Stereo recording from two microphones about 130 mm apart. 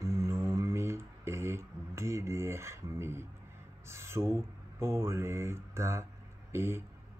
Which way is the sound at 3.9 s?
20° right (ahead or behind).